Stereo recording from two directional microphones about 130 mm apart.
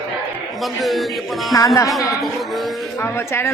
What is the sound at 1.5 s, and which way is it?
A woman's voice, 25° left (ahead or behind).